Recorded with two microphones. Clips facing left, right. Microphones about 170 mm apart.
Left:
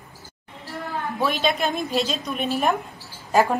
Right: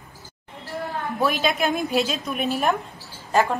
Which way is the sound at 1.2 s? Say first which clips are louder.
Right 1 dB; centre (ahead or behind).